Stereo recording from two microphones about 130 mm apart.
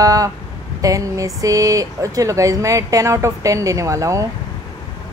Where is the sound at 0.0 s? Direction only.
25° right (ahead or behind).